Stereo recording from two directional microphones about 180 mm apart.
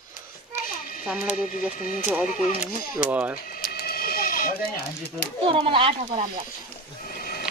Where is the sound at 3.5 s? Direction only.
55° left (ahead or behind).